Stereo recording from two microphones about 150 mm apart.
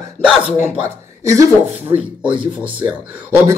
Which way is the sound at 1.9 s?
10° right (ahead or behind).